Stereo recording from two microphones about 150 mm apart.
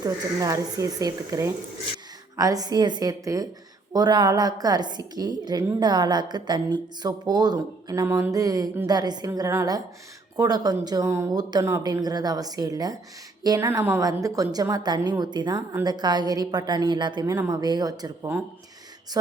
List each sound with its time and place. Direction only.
0.0 s a woman's voice: 20° right (ahead or behind)